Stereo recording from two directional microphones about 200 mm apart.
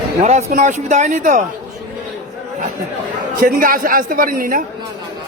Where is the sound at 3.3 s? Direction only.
45° right (ahead or behind).